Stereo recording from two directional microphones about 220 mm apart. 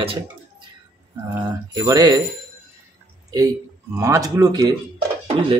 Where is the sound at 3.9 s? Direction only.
15° right (ahead or behind).